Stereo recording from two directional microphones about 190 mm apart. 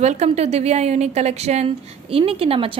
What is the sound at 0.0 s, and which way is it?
A woman's voice, 35° right (ahead or behind).